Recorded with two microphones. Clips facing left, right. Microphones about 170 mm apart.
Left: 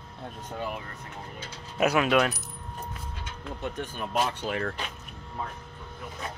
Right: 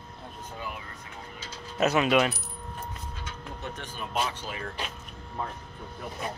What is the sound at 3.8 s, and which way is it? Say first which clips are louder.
Speech: left 3 dB; 60° left (ahead or behind).